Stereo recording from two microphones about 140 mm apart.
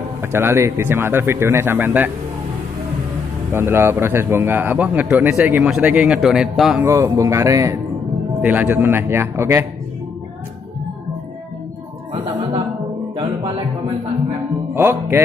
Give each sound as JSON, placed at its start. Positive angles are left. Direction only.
{"t": 0.2, "sound": "a man's voice", "side_deg": -15}
{"t": 3.5, "sound": "a man's voice", "side_deg": -20}
{"t": 6.8, "sound": "a man's voice", "side_deg": -20}
{"t": 13.1, "sound": "music", "side_deg": -35}
{"t": 14.7, "sound": "music", "side_deg": -15}